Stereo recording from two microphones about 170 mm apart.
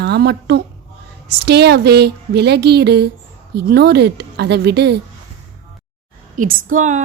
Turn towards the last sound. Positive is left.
turn(degrees=-45)  # may be behind; listen again after turning